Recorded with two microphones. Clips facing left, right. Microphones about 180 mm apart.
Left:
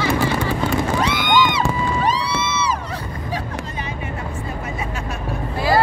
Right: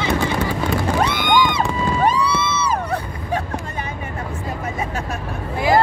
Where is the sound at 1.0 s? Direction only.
55° right (ahead or behind).